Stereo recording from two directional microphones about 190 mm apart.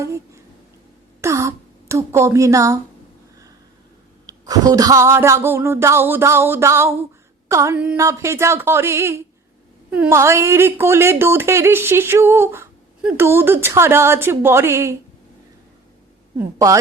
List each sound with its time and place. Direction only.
1.2 s a sound: 15° right (ahead or behind)
4.3 s speech: 20° right (ahead or behind)
16.6 s speech: 15° right (ahead or behind)